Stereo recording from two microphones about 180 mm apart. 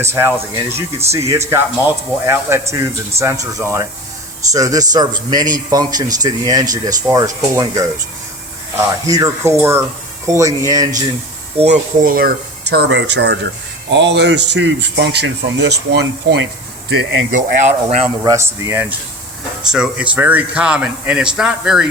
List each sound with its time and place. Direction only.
0.0 s a man's voice: 15° right (ahead or behind)
11.5 s speech: 35° right (ahead or behind)
12.7 s speech: 70° right (ahead or behind)
16.9 s speech: 80° right
17.3 s speech: 40° right (ahead or behind)
18.2 s speech: 15° right (ahead or behind)